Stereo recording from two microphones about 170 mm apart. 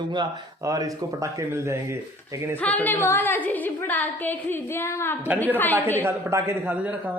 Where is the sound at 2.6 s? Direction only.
10° left (ahead or behind).